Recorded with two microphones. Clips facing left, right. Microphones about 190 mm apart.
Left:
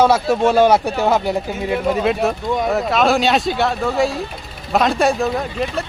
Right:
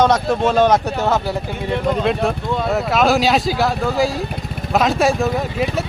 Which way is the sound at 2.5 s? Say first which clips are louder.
Left 1 dB; 15° left (ahead or behind).